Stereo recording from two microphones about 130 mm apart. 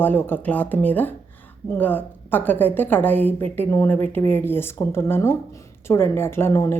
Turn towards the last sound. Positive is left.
turn(degrees=20)  # may be behind; listen again after turning